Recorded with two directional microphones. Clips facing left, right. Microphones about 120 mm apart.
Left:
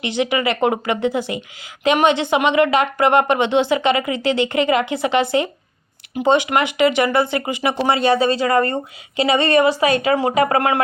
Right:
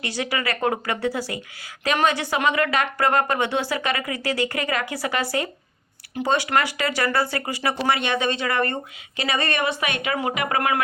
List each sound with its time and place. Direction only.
0.0 s speech: 20° left (ahead or behind)
7.8 s speech: 35° left (ahead or behind)